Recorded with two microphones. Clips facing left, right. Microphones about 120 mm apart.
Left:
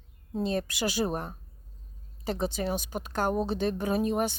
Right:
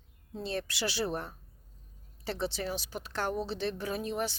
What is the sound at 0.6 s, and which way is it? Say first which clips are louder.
Speech: left 4 dB; 15° left (ahead or behind).